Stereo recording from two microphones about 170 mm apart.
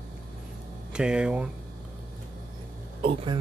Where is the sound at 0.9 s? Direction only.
5° right (ahead or behind).